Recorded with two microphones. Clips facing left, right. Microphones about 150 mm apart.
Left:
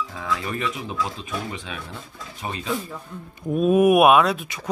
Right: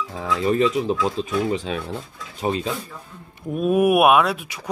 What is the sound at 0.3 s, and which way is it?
Speech, 25° right (ahead or behind).